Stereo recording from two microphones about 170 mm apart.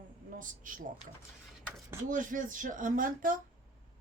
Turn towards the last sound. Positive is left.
turn(degrees=-55)  # may be behind; listen again after turning